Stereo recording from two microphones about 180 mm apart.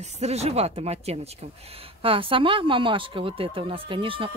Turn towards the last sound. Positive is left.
turn(degrees=-30)  # may be behind; listen again after turning